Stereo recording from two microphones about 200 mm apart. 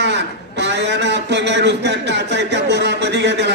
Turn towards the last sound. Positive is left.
turn(degrees=-60)  # may be behind; listen again after turning